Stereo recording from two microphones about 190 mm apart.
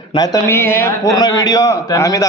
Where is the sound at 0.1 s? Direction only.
20° left (ahead or behind).